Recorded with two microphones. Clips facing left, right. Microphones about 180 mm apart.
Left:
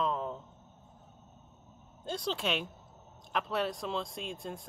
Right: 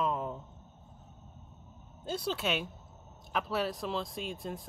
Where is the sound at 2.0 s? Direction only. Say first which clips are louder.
Right 1 dB; 5° right (ahead or behind).